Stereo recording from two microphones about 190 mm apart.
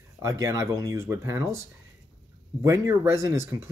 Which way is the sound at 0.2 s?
15° right (ahead or behind).